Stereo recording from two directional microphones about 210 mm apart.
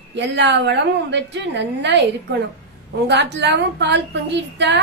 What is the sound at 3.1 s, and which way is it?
A woman's voice, 55° right (ahead or behind).